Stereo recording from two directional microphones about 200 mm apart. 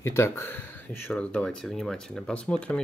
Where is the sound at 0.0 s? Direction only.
15° left (ahead or behind).